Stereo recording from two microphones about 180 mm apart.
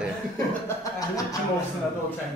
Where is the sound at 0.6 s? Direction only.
20° left (ahead or behind).